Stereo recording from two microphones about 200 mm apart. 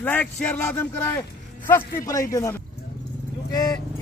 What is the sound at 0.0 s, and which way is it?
Speech, 10° left (ahead or behind).